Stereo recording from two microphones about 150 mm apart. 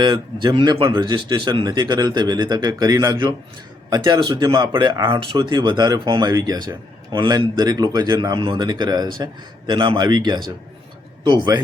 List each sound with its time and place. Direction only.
0.0 s speech: 30° right (ahead or behind)